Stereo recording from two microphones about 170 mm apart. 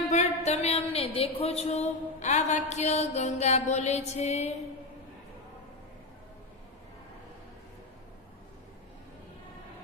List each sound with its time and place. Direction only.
0.1 s a woman's voice: 40° left (ahead or behind)